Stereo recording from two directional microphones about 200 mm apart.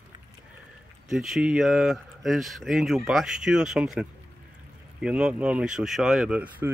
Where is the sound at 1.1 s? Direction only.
Centre (ahead or behind).